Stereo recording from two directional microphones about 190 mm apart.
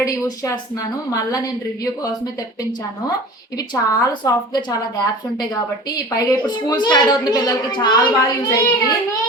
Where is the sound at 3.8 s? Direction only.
20° left (ahead or behind).